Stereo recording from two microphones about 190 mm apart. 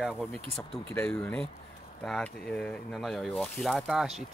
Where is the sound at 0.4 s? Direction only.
30° right (ahead or behind).